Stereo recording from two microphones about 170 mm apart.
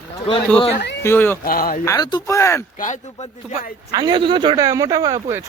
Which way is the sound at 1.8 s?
20° left (ahead or behind).